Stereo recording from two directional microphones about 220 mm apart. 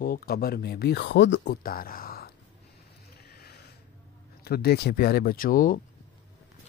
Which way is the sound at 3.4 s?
45° left (ahead or behind).